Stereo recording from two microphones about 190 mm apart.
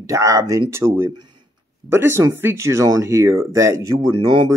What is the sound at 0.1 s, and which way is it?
Speech, 15° right (ahead or behind).